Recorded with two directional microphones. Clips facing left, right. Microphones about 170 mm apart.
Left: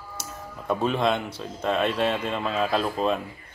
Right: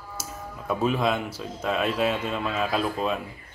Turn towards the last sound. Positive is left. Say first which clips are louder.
# left 2 dB
turn(degrees=-5)  # may be behind; listen again after turning